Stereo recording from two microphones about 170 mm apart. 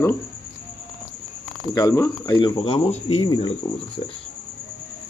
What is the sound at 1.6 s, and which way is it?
Speech, 20° left (ahead or behind).